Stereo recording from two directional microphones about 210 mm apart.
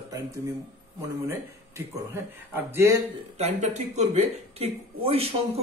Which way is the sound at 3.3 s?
30° right (ahead or behind).